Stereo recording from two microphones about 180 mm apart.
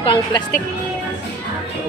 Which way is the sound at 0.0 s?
30° left (ahead or behind).